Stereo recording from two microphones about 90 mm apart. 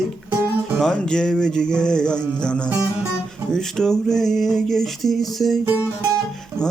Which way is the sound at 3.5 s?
5° left (ahead or behind).